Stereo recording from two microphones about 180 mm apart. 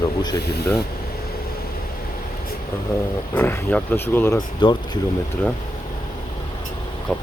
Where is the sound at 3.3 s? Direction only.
10° left (ahead or behind).